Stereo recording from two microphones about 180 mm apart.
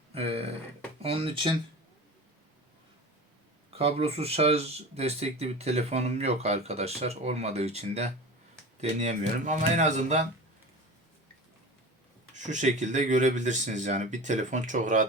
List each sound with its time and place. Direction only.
0.1 s a sound: 35° right (ahead or behind)
1.0 s speech: 30° right (ahead or behind)
3.7 s speech: 35° right (ahead or behind)
12.3 s speech: 45° right (ahead or behind)